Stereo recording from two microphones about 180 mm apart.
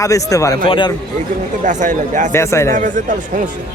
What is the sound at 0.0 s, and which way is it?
Speech, 20° left (ahead or behind).